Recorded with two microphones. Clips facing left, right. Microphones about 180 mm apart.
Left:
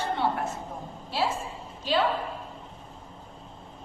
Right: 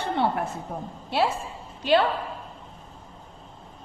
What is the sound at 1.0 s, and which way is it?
Speech, 65° right (ahead or behind).